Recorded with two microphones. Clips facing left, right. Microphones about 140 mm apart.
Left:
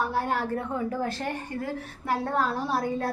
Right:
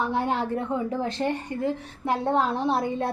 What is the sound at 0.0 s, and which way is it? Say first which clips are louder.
A woman's voice: right 2 dB; 20° right (ahead or behind).